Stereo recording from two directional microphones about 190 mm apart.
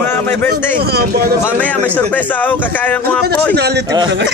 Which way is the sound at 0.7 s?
55° right (ahead or behind).